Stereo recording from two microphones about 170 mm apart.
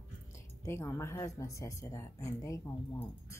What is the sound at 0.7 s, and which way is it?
Speech, 15° left (ahead or behind).